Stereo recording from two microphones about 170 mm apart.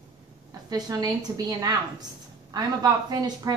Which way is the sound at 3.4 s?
20° right (ahead or behind).